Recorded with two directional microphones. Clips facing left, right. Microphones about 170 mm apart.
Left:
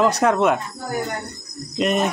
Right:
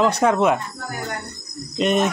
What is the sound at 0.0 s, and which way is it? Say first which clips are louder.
Speech: even; centre (ahead or behind).